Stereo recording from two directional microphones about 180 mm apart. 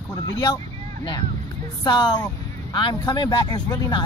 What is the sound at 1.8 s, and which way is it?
Speech, 25° left (ahead or behind).